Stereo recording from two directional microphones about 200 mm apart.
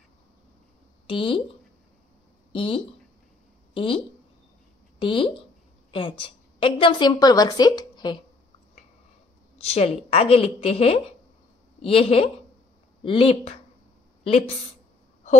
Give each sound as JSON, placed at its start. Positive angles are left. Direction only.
{"t": 1.0, "sound": "speech", "side_deg": 25}
{"t": 2.5, "sound": "speech", "side_deg": 25}
{"t": 5.0, "sound": "a woman's voice", "side_deg": 25}
{"t": 9.6, "sound": "a woman's voice", "side_deg": 30}